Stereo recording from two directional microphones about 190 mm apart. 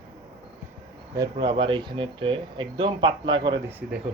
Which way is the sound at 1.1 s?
20° right (ahead or behind).